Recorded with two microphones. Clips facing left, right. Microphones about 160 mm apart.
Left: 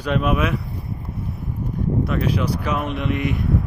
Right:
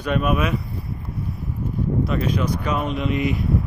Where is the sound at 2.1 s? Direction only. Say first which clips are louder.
Left 1 dB; 10° left (ahead or behind).